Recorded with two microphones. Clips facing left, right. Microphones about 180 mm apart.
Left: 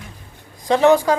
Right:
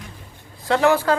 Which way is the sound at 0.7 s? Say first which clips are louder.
Left 4 dB; 15° left (ahead or behind).